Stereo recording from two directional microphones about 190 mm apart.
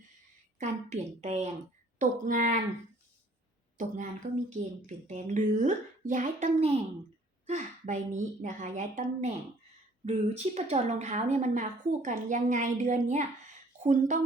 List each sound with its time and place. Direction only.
0.6 s a woman's voice: 35° right (ahead or behind)
3.8 s a woman's voice: 40° right (ahead or behind)